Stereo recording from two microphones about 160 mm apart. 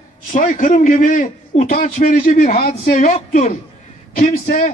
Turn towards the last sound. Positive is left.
turn(degrees=55)  # may be behind; listen again after turning